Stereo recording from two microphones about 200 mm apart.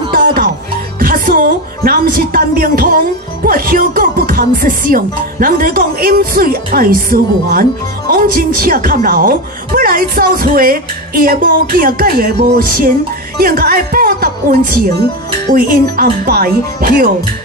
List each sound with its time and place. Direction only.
0.1 s music: 45° right (ahead or behind)
0.9 s a woman's voice: 45° right (ahead or behind)